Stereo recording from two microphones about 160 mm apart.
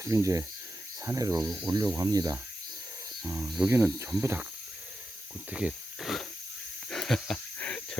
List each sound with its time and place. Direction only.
0.0 s speech: 20° right (ahead or behind)
1.4 s speech: centre (ahead or behind)
1.6 s speech: 25° right (ahead or behind)
3.2 s speech: 10° right (ahead or behind)
5.5 s speech: 5° right (ahead or behind)
6.9 s a sound: 5° left (ahead or behind)